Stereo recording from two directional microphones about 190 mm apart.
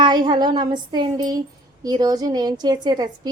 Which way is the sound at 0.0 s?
25° right (ahead or behind).